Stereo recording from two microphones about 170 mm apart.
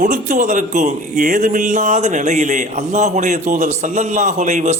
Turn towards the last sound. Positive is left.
turn(degrees=-45)  # may be behind; listen again after turning